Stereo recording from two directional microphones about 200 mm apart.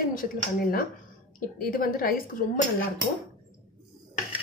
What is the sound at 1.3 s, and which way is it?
Speech, 45° left (ahead or behind).